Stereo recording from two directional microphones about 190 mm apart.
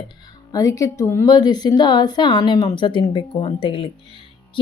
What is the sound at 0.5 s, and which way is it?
Speech, 15° left (ahead or behind).